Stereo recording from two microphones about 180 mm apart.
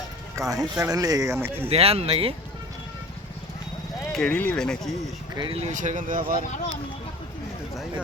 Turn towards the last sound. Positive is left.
turn(degrees=-50)  # may be behind; listen again after turning